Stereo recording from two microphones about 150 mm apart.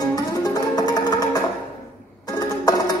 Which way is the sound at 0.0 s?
25° left (ahead or behind).